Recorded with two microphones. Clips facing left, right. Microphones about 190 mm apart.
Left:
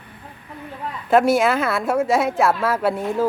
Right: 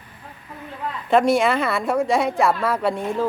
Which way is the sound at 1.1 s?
5° left (ahead or behind).